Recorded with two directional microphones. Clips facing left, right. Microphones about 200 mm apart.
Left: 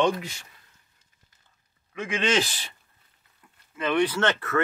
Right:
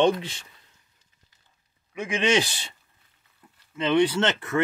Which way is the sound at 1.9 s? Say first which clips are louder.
Right 2 dB; 15° right (ahead or behind).